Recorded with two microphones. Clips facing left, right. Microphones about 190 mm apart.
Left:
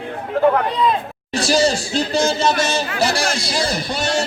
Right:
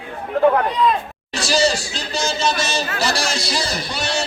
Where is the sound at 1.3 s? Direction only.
55° left (ahead or behind).